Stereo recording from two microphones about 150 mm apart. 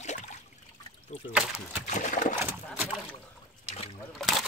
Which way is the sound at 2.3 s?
15° right (ahead or behind).